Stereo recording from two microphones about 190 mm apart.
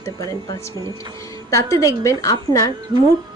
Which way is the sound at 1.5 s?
15° left (ahead or behind).